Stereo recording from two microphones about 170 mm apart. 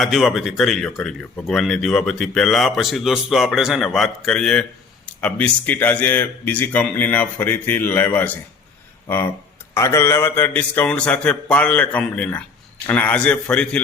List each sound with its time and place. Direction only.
0.0 s a man's voice: centre (ahead or behind)